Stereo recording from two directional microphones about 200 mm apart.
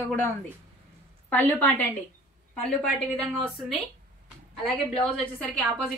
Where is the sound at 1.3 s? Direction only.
10° left (ahead or behind).